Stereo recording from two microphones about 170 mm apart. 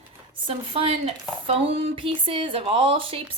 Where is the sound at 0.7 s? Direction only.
35° right (ahead or behind).